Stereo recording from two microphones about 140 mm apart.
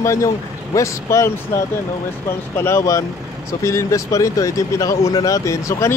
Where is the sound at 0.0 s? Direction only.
20° left (ahead or behind).